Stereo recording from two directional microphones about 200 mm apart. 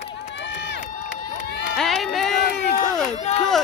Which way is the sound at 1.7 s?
Centre (ahead or behind).